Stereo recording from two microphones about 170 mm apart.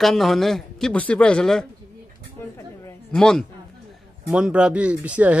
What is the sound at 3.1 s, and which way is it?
A man's voice, 5° left (ahead or behind).